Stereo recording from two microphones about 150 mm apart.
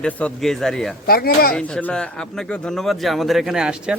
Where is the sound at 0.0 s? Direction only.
5° left (ahead or behind).